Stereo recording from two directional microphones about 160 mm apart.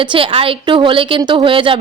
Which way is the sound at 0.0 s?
30° right (ahead or behind).